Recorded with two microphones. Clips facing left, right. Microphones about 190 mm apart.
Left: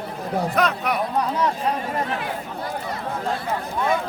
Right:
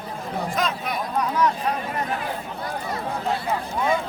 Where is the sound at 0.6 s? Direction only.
65° left (ahead or behind).